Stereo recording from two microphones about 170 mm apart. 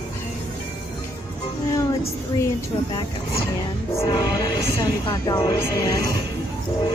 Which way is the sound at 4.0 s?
20° left (ahead or behind).